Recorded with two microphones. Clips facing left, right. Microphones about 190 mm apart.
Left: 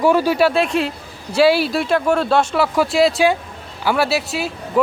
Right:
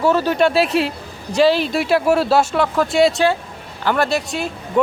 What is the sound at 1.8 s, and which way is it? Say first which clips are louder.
Speech: right 1 dB; 5° right (ahead or behind).